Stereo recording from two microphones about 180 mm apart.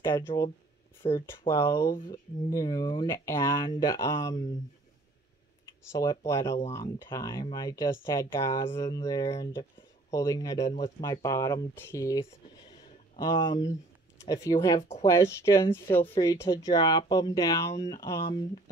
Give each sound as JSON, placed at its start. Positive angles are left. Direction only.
{"t": 0.0, "sound": "speech", "side_deg": 15}
{"t": 5.9, "sound": "speech", "side_deg": 15}
{"t": 14.8, "sound": "speech", "side_deg": 35}
{"t": 15.0, "sound": "speech", "side_deg": 15}